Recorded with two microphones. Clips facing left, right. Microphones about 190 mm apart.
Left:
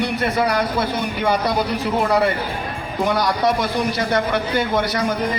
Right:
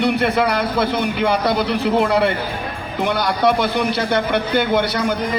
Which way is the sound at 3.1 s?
60° right (ahead or behind).